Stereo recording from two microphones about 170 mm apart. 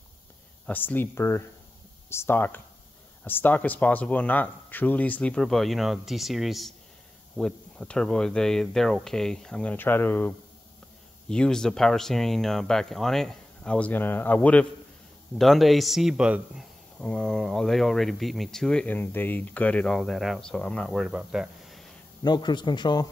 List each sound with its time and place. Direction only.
0.7 s speech: 10° left (ahead or behind)
22.2 s speech: 25° left (ahead or behind)